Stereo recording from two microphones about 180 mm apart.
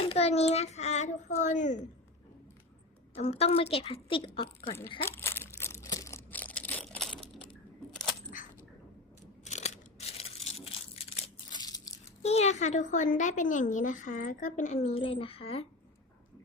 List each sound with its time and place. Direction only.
0.1 s a child's voice: 35° left (ahead or behind)
3.2 s a child's voice: 35° left (ahead or behind)
5.0 s a sound: 15° left (ahead or behind)
9.4 s crushing: 40° left (ahead or behind)
11.6 s a sound: 20° left (ahead or behind)
12.2 s a woman's voice: 35° left (ahead or behind)